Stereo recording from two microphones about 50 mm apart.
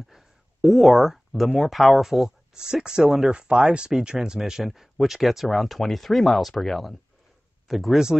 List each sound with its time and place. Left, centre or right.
0.1 s speech: centre
2.5 s speech: centre
3.3 s speech: centre
4.4 s speech: centre